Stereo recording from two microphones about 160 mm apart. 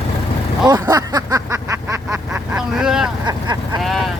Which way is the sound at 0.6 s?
25° right (ahead or behind).